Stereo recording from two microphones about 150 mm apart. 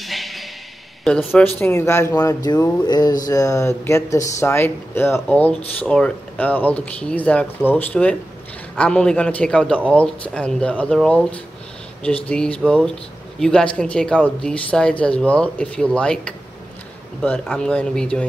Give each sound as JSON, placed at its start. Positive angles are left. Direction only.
{"t": 0.0, "sound": "a sound", "side_deg": 0}
{"t": 1.0, "sound": "speech", "side_deg": 5}
{"t": 1.6, "sound": "speech", "side_deg": 15}